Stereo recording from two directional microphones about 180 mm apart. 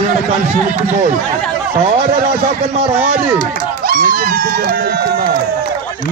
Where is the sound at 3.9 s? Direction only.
50° right (ahead or behind).